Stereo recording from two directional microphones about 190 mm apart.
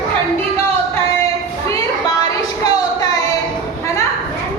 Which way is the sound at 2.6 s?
20° left (ahead or behind).